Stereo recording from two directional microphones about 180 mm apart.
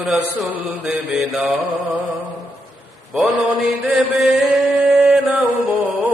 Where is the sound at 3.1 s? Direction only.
Centre (ahead or behind).